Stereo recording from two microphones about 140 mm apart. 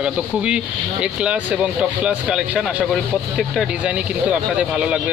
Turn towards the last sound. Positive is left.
turn(degrees=-10)  # may be behind; listen again after turning